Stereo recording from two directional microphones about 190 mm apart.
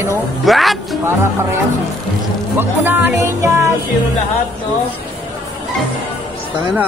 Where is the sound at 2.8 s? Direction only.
10° right (ahead or behind).